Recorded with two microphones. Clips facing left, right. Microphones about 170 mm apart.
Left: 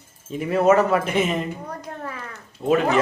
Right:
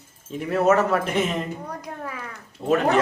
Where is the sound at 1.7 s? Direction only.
10° right (ahead or behind).